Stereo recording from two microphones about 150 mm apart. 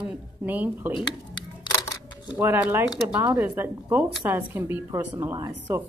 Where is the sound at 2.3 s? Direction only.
15° right (ahead or behind).